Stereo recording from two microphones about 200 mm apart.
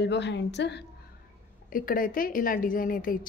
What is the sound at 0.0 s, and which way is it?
Speech, 60° left (ahead or behind).